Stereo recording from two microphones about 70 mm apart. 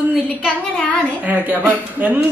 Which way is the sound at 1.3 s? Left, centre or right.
Right.